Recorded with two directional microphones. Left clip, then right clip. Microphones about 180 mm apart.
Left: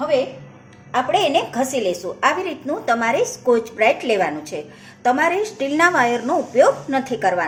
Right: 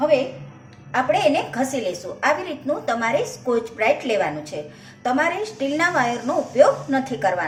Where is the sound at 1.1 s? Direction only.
30° left (ahead or behind).